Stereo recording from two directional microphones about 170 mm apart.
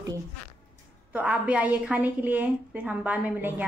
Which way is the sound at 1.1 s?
10° right (ahead or behind).